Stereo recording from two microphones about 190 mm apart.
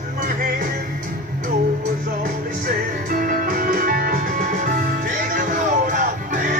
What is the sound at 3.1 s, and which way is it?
Music, 45° right (ahead or behind).